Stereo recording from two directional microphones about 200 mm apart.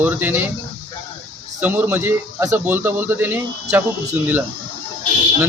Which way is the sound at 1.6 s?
10° right (ahead or behind).